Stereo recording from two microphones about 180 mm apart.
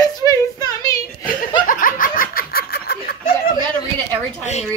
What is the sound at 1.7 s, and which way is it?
Laughter, 50° left (ahead or behind).